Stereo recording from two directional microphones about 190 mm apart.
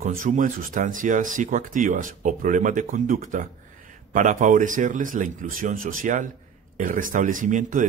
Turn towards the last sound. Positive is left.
turn(degrees=-40)  # may be behind; listen again after turning